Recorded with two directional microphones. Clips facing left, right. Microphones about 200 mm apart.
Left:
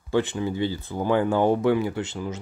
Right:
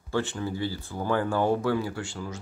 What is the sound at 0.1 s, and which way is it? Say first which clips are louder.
Speech: left 5 dB; 20° left (ahead or behind).